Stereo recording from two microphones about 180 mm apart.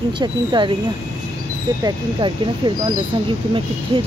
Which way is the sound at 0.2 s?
25° right (ahead or behind).